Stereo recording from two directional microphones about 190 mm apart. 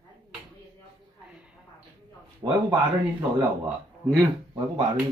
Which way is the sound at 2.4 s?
20° right (ahead or behind).